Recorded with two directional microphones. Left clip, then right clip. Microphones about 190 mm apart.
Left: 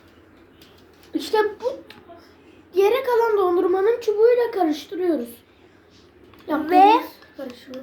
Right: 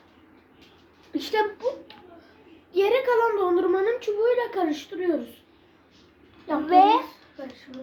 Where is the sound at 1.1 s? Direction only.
20° right (ahead or behind).